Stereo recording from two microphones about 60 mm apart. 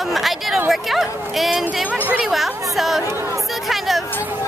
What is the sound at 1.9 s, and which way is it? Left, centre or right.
Speech, right.